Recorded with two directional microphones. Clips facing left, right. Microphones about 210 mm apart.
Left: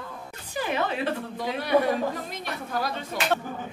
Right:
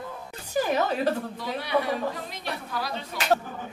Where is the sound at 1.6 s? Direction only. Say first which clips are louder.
Left 4 dB; 50° left (ahead or behind).